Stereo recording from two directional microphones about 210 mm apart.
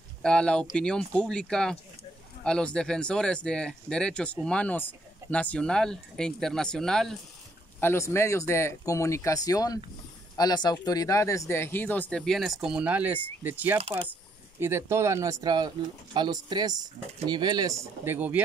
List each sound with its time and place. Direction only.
0.2 s speech: 5° left (ahead or behind)
13.7 s speech: 25° right (ahead or behind)
14.6 s speech: 10° right (ahead or behind)